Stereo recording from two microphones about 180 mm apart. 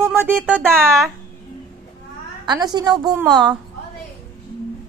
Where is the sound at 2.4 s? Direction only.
25° right (ahead or behind).